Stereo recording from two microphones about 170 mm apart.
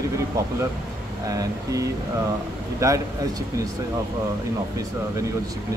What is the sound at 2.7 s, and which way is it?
Speech, 20° right (ahead or behind).